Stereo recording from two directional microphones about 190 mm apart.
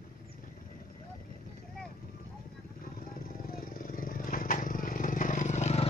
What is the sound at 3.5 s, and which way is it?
Vehicle, 50° left (ahead or behind).